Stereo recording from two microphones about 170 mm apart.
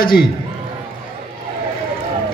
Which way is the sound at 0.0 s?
60° left (ahead or behind).